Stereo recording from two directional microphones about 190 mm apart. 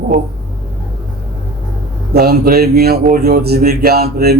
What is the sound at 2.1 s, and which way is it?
Speech, 55° right (ahead or behind).